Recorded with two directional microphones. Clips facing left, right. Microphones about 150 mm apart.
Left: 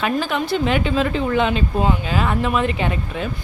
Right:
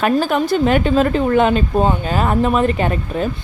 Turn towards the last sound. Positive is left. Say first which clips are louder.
# right 4 dB
turn(degrees=-45)  # may be behind; listen again after turning